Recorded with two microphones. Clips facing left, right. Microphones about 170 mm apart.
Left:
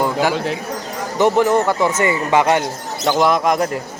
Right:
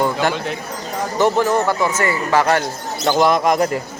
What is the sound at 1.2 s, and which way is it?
Speech, 20° left (ahead or behind).